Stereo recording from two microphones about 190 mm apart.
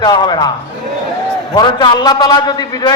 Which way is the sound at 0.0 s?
20° left (ahead or behind).